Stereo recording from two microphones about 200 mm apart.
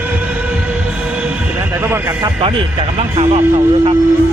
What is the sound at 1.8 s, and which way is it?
Speech, 10° right (ahead or behind).